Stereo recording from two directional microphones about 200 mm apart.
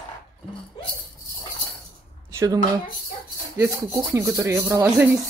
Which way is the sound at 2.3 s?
15° right (ahead or behind).